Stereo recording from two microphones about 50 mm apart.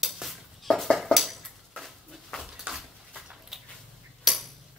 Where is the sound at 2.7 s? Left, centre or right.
Right.